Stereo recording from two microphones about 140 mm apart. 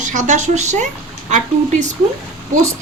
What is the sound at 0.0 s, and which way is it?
Speech, 60° right (ahead or behind).